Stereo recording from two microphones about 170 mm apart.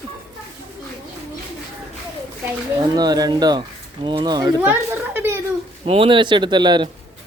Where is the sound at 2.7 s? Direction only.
25° right (ahead or behind).